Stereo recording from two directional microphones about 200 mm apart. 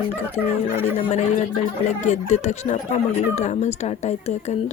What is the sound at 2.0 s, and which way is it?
Speech, 35° left (ahead or behind).